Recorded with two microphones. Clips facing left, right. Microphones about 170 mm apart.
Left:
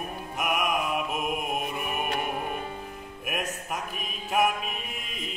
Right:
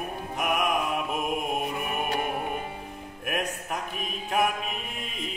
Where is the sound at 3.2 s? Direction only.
5° left (ahead or behind).